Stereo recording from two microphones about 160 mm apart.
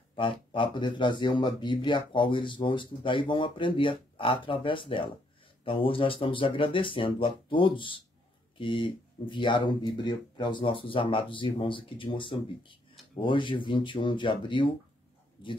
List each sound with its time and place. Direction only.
0.1 s speech: 30° left (ahead or behind)